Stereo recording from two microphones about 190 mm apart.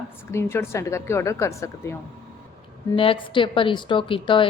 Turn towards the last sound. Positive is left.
turn(degrees=25)  # may be behind; listen again after turning